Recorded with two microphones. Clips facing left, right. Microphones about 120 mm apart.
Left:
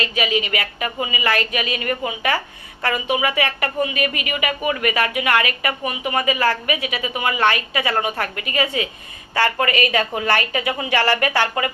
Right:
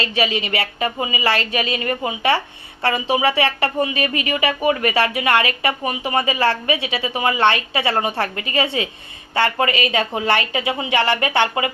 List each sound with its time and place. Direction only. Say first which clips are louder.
0.0 s a woman's voice: right 1 dB; 30° right (ahead or behind)